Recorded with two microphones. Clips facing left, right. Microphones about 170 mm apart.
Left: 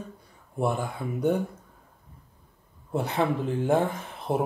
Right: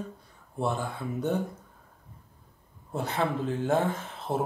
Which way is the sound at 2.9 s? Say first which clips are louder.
Left 3 dB; 15° left (ahead or behind).